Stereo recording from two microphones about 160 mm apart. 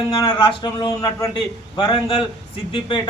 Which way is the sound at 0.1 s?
25° left (ahead or behind).